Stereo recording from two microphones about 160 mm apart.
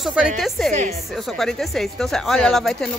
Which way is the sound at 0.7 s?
50° right (ahead or behind).